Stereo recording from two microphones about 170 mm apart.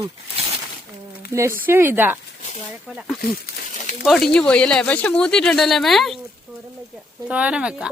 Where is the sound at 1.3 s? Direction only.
15° right (ahead or behind); by 6.1 s centre (ahead or behind).